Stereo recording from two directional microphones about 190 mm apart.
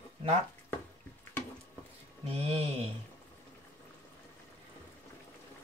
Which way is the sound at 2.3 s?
30° right (ahead or behind).